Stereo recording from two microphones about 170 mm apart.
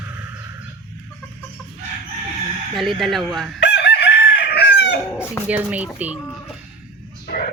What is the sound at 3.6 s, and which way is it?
Chicken, 85° left.